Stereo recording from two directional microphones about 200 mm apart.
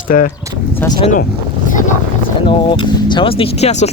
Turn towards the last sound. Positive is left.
turn(degrees=35)  # may be behind; listen again after turning